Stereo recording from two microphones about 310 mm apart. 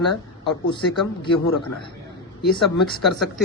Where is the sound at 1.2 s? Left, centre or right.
Centre.